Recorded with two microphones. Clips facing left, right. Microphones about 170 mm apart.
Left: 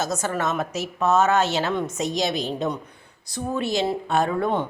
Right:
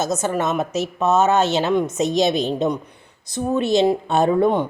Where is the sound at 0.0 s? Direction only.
20° right (ahead or behind).